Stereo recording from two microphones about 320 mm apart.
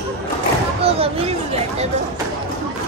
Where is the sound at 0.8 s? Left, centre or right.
Centre.